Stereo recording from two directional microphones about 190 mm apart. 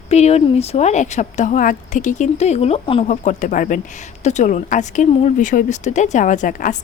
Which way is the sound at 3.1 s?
40° left (ahead or behind).